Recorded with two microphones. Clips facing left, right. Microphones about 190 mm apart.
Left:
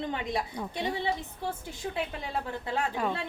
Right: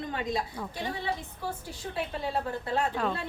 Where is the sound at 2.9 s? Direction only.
10° left (ahead or behind).